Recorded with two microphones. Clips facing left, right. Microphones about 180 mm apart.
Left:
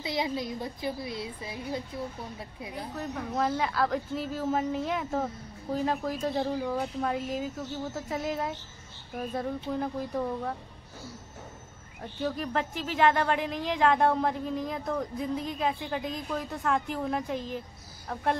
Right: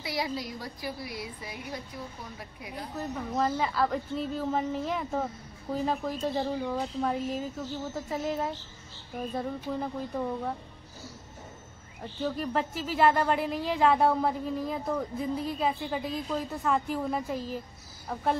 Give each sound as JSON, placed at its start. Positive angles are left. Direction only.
{"t": 0.0, "sound": "a woman's voice", "side_deg": 20}
{"t": 3.2, "sound": "speech", "side_deg": 0}
{"t": 12.3, "sound": "speech", "side_deg": 0}